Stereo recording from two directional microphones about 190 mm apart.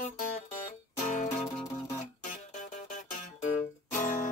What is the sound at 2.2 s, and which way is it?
Music, 45° left (ahead or behind).